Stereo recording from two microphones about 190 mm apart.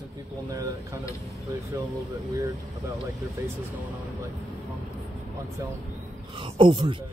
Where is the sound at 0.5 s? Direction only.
15° right (ahead or behind).